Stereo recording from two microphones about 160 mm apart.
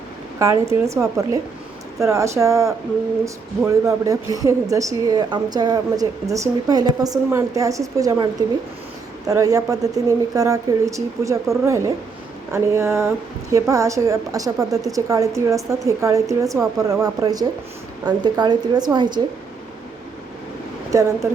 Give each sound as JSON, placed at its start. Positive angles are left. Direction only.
{"t": 0.3, "sound": "a woman's voice", "side_deg": -20}
{"t": 20.9, "sound": "speech", "side_deg": -15}